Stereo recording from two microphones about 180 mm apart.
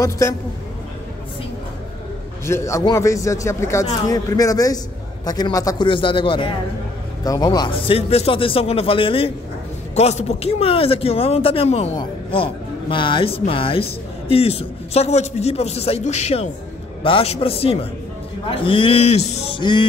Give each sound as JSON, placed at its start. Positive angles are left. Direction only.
{"t": 0.0, "sound": "a man's voice", "side_deg": 15}
{"t": 2.4, "sound": "a man's voice", "side_deg": 15}